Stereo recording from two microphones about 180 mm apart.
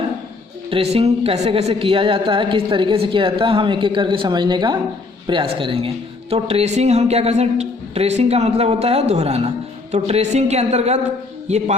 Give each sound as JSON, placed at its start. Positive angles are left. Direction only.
{"t": 0.7, "sound": "a woman's voice", "side_deg": -30}